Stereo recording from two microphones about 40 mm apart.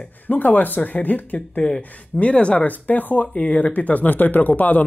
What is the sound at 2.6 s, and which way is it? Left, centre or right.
Speech, left.